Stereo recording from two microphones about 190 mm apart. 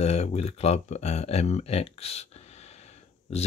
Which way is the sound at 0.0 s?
35° left (ahead or behind).